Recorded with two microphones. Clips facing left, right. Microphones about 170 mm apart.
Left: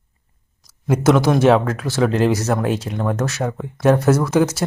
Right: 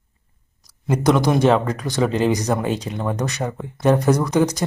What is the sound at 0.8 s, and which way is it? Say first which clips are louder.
Speech: left 2 dB; 5° left (ahead or behind).